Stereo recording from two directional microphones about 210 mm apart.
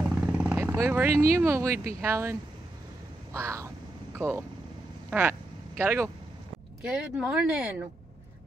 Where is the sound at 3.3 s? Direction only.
15° right (ahead or behind).